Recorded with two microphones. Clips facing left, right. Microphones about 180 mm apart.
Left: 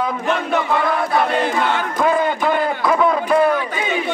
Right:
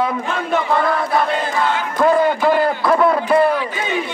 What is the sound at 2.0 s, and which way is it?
A man's voice, centre (ahead or behind).